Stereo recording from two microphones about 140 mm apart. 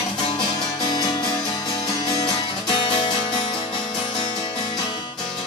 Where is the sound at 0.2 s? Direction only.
35° left (ahead or behind).